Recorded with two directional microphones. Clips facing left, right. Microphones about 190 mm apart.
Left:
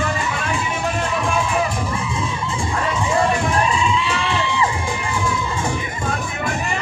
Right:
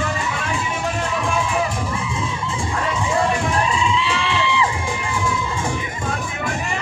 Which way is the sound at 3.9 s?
45° left (ahead or behind).